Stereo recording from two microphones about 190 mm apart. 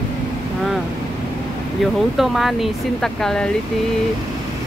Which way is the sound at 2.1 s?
Centre (ahead or behind).